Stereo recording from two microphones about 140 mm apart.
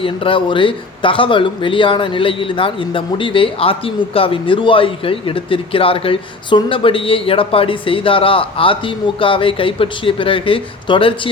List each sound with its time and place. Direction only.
0.0 s speech: 40° left (ahead or behind)